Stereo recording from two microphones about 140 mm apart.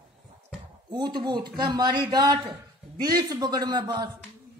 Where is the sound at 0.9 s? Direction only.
30° right (ahead or behind).